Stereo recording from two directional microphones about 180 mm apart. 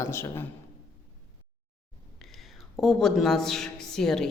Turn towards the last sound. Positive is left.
turn(degrees=5)  # may be behind; listen again after turning